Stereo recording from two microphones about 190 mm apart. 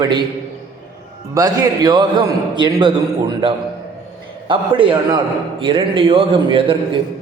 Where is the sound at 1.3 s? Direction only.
20° right (ahead or behind).